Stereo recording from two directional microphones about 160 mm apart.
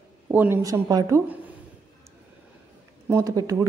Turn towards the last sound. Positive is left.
turn(degrees=-20)  # may be behind; listen again after turning